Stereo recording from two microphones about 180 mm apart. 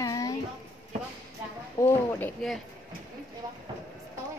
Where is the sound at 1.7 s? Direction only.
15° left (ahead or behind).